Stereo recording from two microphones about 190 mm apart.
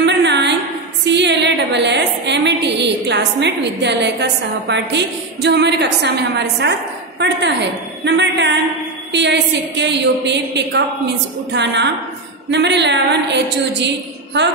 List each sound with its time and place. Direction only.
0.0 s a sound: 65° right (ahead or behind)
1.0 s a woman's voice: 65° right (ahead or behind)
8.0 s a woman's voice: 65° right (ahead or behind)